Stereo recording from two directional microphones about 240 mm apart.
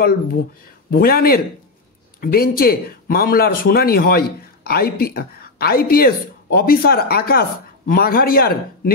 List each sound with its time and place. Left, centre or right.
0.0 s speech: left